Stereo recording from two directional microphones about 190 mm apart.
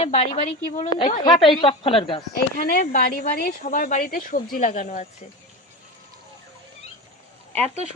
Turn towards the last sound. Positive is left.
turn(degrees=10)  # may be behind; listen again after turning